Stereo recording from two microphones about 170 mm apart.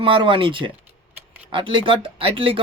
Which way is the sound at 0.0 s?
30° right (ahead or behind).